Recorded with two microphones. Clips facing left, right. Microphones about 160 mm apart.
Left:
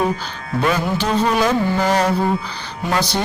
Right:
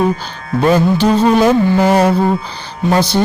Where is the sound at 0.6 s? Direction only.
30° right (ahead or behind).